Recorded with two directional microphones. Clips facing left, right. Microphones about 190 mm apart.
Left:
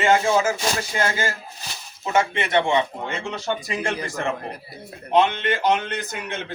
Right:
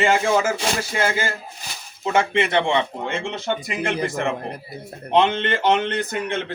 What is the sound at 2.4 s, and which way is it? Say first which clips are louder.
Speech: even; 30° right (ahead or behind).